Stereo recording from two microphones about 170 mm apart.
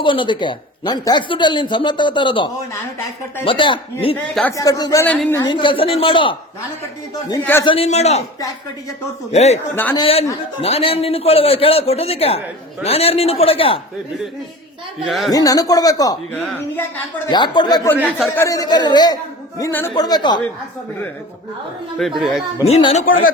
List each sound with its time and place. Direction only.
0.0 s speech: 30° left (ahead or behind)
5.0 s speech: 5° left (ahead or behind)
5.4 s speech: 30° left (ahead or behind)
7.6 s a man's voice: 35° left (ahead or behind)
9.3 s a man's voice: 40° left (ahead or behind)
15.0 s speech: centre (ahead or behind)
15.3 s speech: 20° left (ahead or behind)
16.3 s speech: 10° left (ahead or behind)
17.2 s speech: 25° left (ahead or behind)
18.0 s speech: 10° left (ahead or behind)
18.4 s speech: 20° left (ahead or behind)
21.9 s speech: centre (ahead or behind)
22.6 s a man's voice: 35° left (ahead or behind)